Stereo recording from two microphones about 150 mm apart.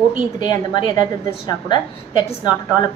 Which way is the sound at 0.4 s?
30° left (ahead or behind).